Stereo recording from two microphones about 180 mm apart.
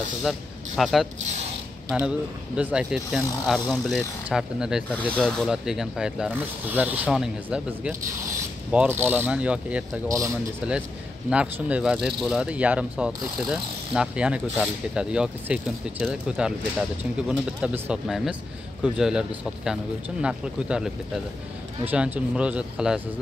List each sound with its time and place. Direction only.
0.2 s speech: centre (ahead or behind)
10.0 s speech: 20° right (ahead or behind)
10.6 s speech: 5° right (ahead or behind)